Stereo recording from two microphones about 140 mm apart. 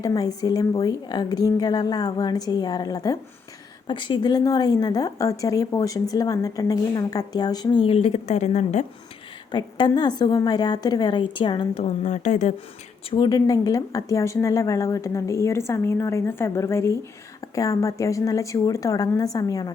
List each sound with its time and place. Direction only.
0.0 s a woman's voice: 25° left (ahead or behind); by 8.9 s 55° left (ahead or behind)
9.5 s a woman's voice: 35° left (ahead or behind); by 12.5 s 55° left (ahead or behind)
13.1 s a woman's voice: 30° left (ahead or behind)